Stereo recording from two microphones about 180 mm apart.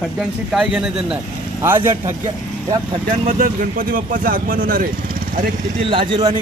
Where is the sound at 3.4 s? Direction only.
50° right (ahead or behind).